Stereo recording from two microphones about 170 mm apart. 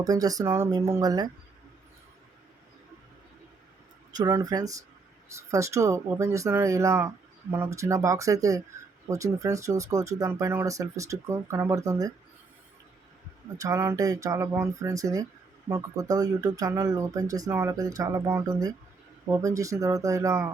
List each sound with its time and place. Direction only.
0.0 s speech: 20° right (ahead or behind)
4.1 s speech: 20° right (ahead or behind)
13.6 s speech: 20° right (ahead or behind)